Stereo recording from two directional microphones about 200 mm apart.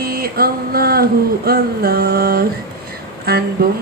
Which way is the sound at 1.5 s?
50° right (ahead or behind).